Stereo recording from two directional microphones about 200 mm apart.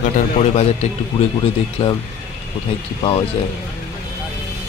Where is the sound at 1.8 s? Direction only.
25° left (ahead or behind).